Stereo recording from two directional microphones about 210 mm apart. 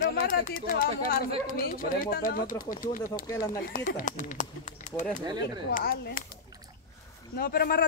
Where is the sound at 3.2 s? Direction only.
15° left (ahead or behind).